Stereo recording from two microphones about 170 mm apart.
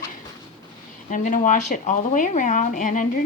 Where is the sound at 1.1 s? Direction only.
50° left (ahead or behind).